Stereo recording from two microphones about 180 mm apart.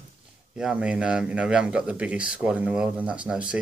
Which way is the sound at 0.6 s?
5° right (ahead or behind).